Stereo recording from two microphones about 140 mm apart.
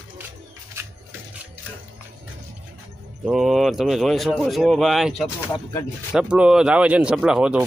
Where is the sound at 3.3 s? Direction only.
Centre (ahead or behind).